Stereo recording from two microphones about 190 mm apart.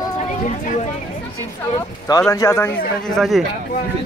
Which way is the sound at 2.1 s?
15° left (ahead or behind).